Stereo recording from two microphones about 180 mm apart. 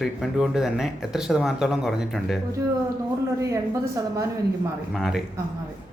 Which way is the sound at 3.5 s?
20° right (ahead or behind).